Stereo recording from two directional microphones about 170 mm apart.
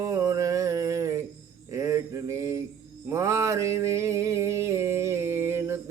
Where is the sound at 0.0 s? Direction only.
20° right (ahead or behind).